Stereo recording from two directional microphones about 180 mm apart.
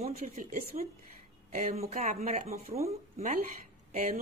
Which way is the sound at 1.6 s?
35° right (ahead or behind).